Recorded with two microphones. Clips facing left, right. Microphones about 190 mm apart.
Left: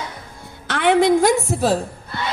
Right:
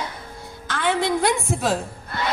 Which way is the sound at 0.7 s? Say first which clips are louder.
Left 7 dB; 65° left (ahead or behind).